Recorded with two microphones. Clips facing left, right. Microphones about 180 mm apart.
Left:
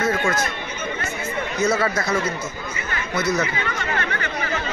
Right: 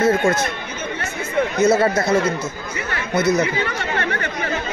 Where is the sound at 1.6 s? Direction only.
25° right (ahead or behind).